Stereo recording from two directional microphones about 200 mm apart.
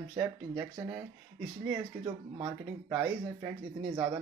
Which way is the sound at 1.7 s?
20° right (ahead or behind).